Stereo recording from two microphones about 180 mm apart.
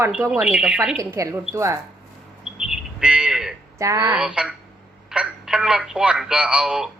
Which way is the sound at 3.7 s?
20° right (ahead or behind).